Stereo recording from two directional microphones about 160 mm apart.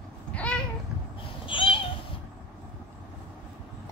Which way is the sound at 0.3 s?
5° left (ahead or behind).